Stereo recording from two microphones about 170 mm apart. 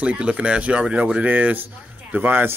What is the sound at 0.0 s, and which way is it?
Speech, 10° right (ahead or behind).